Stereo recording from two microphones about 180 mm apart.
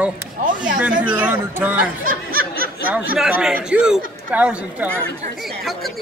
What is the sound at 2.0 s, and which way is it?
Snicker, 50° right (ahead or behind).